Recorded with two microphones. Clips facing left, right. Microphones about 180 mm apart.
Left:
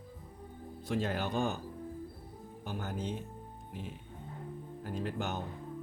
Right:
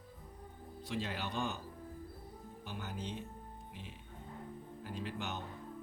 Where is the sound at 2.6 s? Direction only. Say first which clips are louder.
Left 6 dB; 45° left (ahead or behind).